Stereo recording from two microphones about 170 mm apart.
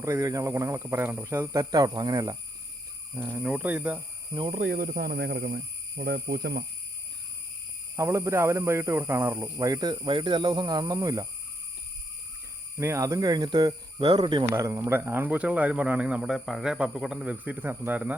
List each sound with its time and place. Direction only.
0.0 s speech: 20° right (ahead or behind)
3.2 s speech: 10° right (ahead or behind)
4.3 s speech: 30° right (ahead or behind)
4.5 s speech: 60° right (ahead or behind)
7.9 s speech: 15° right (ahead or behind)
12.7 s speech: 15° right (ahead or behind)
14.5 s speech: 15° right (ahead or behind)